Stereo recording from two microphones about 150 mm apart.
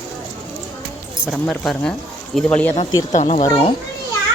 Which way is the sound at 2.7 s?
50° left (ahead or behind).